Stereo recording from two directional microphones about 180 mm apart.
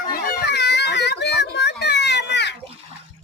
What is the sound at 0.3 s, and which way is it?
Children playing, 70° left (ahead or behind).